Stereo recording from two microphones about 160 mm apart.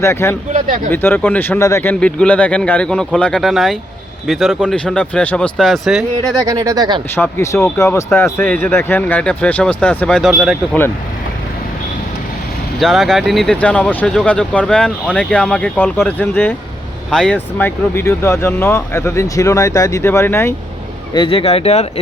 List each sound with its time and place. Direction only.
0.0 s speech: 15° left (ahead or behind); by 6.3 s centre (ahead or behind)
6.4 s speech: 20° right (ahead or behind)
7.2 s speech: 15° left (ahead or behind); by 10.8 s 5° right (ahead or behind)
12.8 s speech: centre (ahead or behind)
21.1 s speech: 30° left (ahead or behind)